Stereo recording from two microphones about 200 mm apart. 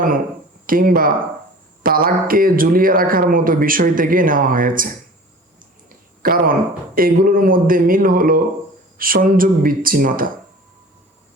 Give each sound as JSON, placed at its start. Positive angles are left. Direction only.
{"t": 0.7, "sound": "speech", "side_deg": -45}
{"t": 6.2, "sound": "speech", "side_deg": -45}